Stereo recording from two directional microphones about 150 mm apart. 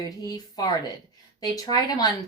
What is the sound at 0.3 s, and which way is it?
A woman's voice, 25° left (ahead or behind).